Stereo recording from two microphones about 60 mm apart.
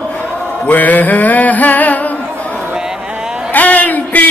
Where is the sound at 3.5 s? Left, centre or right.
Left.